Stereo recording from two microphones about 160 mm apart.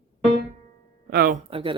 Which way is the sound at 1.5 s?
35° right (ahead or behind).